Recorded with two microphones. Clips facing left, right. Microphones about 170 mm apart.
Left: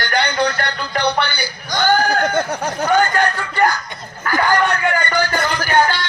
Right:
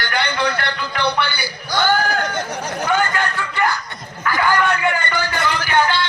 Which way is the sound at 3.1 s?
40° left (ahead or behind).